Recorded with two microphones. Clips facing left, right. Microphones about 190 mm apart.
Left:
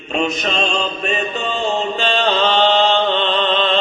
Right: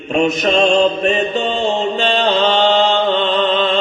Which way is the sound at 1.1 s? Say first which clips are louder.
Right 5 dB; 30° right (ahead or behind).